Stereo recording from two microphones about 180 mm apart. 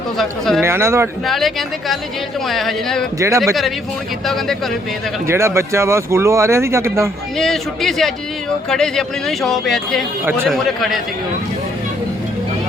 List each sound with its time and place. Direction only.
0.2 s speech: centre (ahead or behind)
0.6 s speech: 15° right (ahead or behind)
1.2 s speech: centre (ahead or behind)
3.2 s speech: 15° right (ahead or behind)
4.3 s speech: centre (ahead or behind)
5.2 s speech: 15° right (ahead or behind)
7.3 s speech: centre (ahead or behind)